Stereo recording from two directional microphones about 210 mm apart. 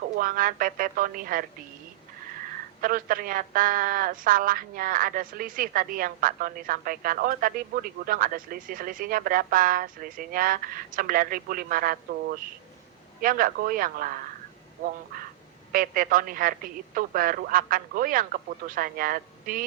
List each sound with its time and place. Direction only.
0.2 s speech: 40° right (ahead or behind)
2.8 s a woman's voice: 40° right (ahead or behind)
13.2 s speech: 40° right (ahead or behind)
15.7 s speech: 40° right (ahead or behind)